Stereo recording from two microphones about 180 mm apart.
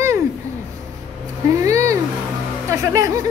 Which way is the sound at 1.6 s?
15° right (ahead or behind).